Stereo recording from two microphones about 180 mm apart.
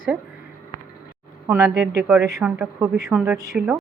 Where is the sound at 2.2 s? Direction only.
10° right (ahead or behind).